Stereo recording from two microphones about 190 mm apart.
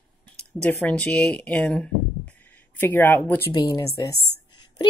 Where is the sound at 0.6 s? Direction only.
10° left (ahead or behind).